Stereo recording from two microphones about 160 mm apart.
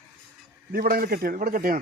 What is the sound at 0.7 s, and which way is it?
A man's voice, 70° right (ahead or behind).